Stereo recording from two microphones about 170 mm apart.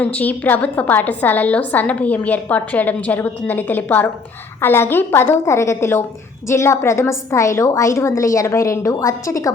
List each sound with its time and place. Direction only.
0.0 s a woman's voice: 10° left (ahead or behind)